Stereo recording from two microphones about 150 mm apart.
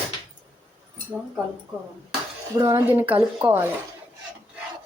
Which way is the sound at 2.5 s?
25° right (ahead or behind).